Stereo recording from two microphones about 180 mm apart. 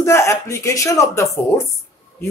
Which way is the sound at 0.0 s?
15° left (ahead or behind).